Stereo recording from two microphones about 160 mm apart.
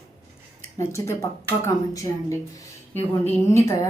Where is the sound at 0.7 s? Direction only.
15° left (ahead or behind).